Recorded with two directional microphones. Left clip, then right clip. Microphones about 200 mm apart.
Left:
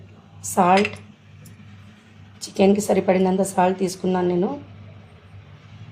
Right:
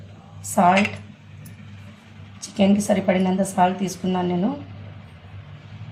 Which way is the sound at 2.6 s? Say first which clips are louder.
Left 3 dB; 45° left (ahead or behind).